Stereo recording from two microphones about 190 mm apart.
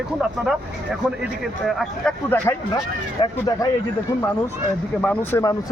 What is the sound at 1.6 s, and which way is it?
Speech, 5° left (ahead or behind).